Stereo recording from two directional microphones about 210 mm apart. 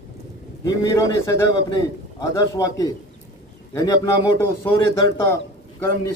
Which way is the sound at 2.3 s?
15° left (ahead or behind).